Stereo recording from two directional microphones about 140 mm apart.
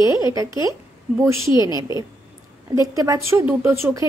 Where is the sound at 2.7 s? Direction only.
25° right (ahead or behind).